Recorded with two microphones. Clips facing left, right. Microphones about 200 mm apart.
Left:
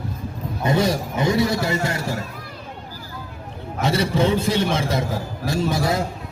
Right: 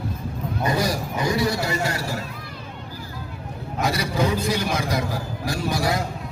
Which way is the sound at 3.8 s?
25° left (ahead or behind).